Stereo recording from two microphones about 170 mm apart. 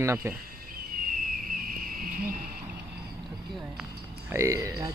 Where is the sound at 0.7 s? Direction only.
55° right (ahead or behind).